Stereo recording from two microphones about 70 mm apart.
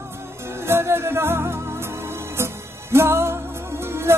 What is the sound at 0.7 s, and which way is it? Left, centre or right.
Music, right.